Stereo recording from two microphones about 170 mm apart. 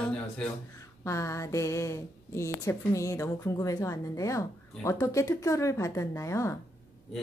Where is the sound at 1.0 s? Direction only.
15° left (ahead or behind).